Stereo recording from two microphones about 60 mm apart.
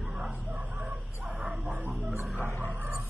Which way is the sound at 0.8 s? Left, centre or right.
Right.